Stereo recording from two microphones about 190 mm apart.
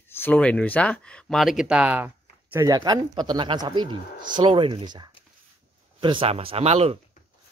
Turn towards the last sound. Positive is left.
turn(degrees=-35)  # may be behind; listen again after turning